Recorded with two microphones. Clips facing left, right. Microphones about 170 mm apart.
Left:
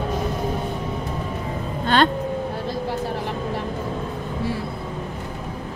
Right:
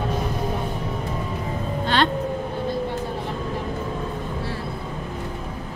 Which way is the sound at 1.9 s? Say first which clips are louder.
Left 3 dB; 50° left (ahead or behind).